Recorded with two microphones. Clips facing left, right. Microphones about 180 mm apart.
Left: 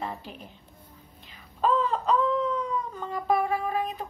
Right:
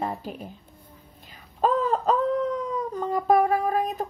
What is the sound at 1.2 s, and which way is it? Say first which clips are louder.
Wail: right 4 dB; 45° right (ahead or behind).